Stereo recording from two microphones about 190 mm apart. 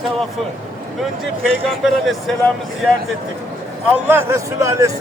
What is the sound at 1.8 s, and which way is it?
Speech, centre (ahead or behind).